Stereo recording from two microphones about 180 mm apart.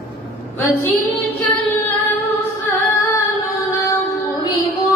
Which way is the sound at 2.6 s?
15° left (ahead or behind).